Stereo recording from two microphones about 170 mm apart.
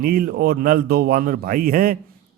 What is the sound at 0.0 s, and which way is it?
A man's voice, 60° right (ahead or behind).